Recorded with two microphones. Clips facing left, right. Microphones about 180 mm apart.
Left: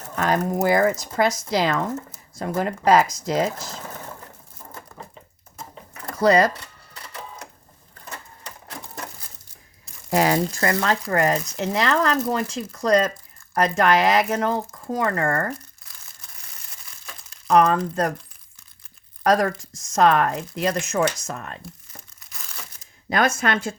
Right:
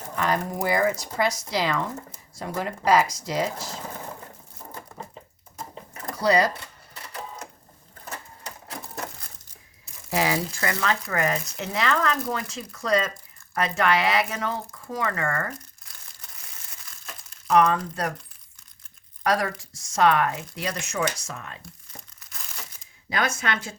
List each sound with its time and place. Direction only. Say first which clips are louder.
0.2 s speech: left 5 dB; 45° left (ahead or behind)
6.1 s speech: left 4 dB; 50° left (ahead or behind)
10.1 s speech: left 5 dB; 50° left (ahead or behind)
17.5 s speech: left 3 dB; 45° left (ahead or behind)
19.2 s speech: left 5 dB; 45° left (ahead or behind)
23.0 s speech: left 6 dB; 50° left (ahead or behind)